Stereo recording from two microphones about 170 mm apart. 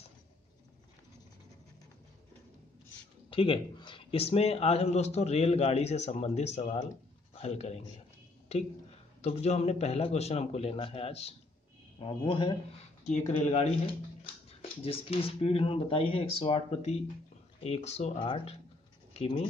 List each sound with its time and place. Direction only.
3.3 s a man's voice: 30° left (ahead or behind)
9.2 s a man's voice: 40° left (ahead or behind)
13.0 s a man's voice: 45° left (ahead or behind)
14.8 s a man's voice: 35° left (ahead or behind)